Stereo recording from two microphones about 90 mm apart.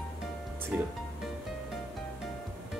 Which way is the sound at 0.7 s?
15° right (ahead or behind).